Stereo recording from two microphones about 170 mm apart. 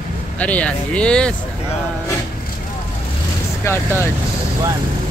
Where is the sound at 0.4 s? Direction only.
10° left (ahead or behind).